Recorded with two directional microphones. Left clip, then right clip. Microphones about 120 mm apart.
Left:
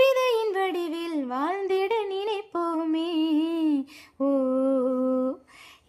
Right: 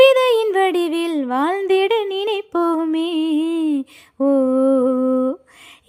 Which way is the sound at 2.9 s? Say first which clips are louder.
Right 6 dB; 40° right (ahead or behind).